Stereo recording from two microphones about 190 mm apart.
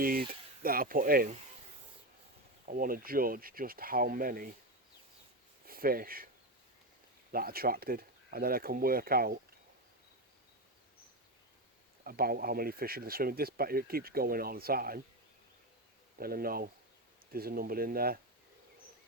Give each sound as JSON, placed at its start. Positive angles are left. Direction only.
{"t": 0.0, "sound": "speech", "side_deg": -50}
{"t": 2.6, "sound": "speech", "side_deg": -50}
{"t": 5.6, "sound": "speech", "side_deg": -50}
{"t": 7.3, "sound": "speech", "side_deg": -50}
{"t": 12.0, "sound": "speech", "side_deg": -50}
{"t": 16.1, "sound": "speech", "side_deg": -50}